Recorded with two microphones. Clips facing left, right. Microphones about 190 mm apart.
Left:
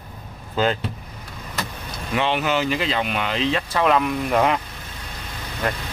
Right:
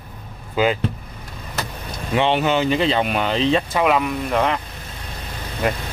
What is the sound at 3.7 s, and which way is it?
Speech, 5° right (ahead or behind).